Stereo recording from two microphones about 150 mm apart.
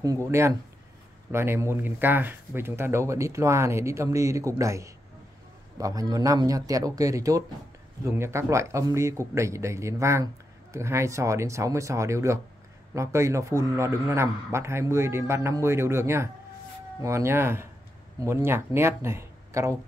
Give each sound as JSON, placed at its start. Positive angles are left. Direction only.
{"t": 0.3, "sound": "a man's voice", "side_deg": -20}